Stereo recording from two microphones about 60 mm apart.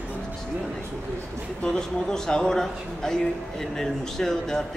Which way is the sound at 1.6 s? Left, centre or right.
Centre.